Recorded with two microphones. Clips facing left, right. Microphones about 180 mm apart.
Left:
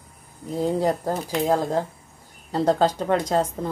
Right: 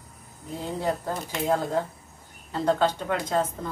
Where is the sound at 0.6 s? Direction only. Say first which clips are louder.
Left 7 dB; 40° left (ahead or behind).